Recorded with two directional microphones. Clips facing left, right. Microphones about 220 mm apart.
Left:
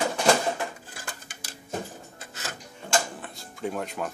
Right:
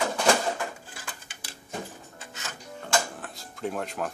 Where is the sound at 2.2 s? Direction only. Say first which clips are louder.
Even; 35° left (ahead or behind).